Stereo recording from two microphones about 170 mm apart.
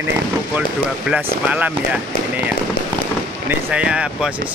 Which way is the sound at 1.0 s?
10° right (ahead or behind).